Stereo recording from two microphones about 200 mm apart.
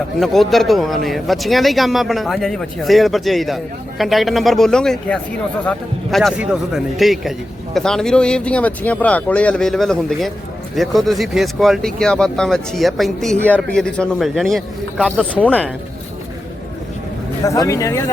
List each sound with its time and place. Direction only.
0.2 s speech: centre (ahead or behind)
17.4 s speech: 15° left (ahead or behind)